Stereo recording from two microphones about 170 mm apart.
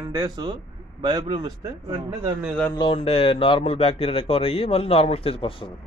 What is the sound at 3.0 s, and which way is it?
A man's voice, 35° left (ahead or behind).